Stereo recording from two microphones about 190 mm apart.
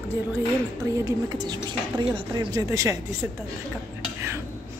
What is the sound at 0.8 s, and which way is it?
Speech, 15° right (ahead or behind).